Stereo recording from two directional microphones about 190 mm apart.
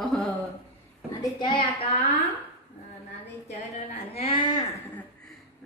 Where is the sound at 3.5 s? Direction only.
35° left (ahead or behind).